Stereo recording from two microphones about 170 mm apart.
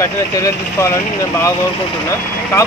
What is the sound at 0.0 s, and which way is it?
Speech, 15° left (ahead or behind).